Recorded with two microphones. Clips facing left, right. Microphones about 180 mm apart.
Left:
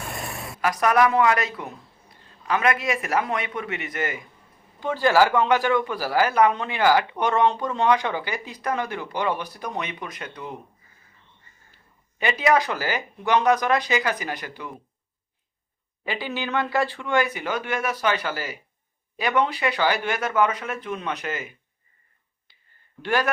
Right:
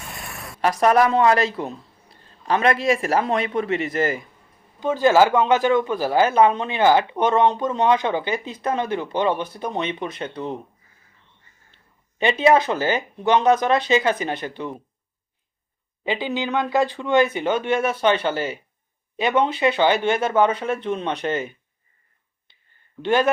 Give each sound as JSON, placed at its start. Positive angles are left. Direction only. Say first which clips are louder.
{"t": 0.0, "sound": "a sound", "louder": "left 3 dB", "side_deg": 0}
{"t": 0.6, "sound": "a man's voice", "louder": "right 3 dB", "side_deg": -30}
{"t": 4.8, "sound": "speech", "louder": "right 3 dB", "side_deg": -20}
{"t": 12.2, "sound": "speech", "louder": "right 4 dB", "side_deg": -25}
{"t": 16.0, "sound": "speech", "louder": "right 5 dB", "side_deg": -20}
{"t": 23.0, "sound": "speech", "louder": "right 5 dB", "side_deg": -25}